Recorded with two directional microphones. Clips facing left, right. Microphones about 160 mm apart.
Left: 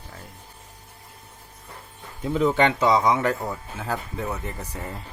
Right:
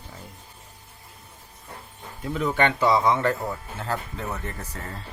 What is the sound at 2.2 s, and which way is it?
Speech, 20° left (ahead or behind).